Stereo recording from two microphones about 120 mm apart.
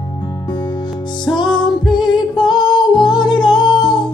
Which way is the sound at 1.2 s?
40° left (ahead or behind).